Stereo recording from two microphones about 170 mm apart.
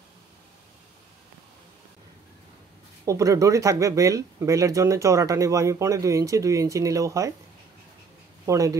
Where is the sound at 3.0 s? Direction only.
20° right (ahead or behind).